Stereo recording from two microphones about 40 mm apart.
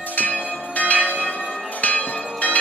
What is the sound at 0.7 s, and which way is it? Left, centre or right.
Church bell, left.